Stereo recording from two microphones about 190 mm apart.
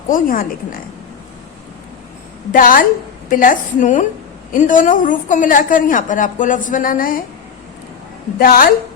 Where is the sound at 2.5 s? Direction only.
45° left (ahead or behind).